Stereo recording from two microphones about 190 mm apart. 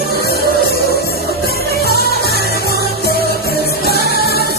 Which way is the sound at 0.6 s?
60° left (ahead or behind).